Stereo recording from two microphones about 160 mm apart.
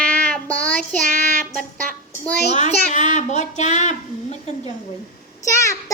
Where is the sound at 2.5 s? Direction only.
45° left (ahead or behind).